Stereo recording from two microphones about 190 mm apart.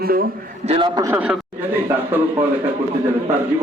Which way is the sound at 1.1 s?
5° right (ahead or behind).